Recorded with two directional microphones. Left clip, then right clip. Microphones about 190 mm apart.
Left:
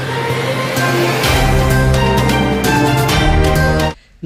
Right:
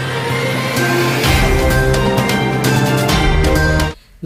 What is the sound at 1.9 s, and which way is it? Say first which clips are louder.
Music: left 1 dB; centre (ahead or behind).